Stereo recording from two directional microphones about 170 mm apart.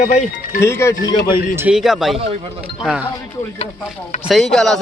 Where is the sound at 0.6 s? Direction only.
15° left (ahead or behind).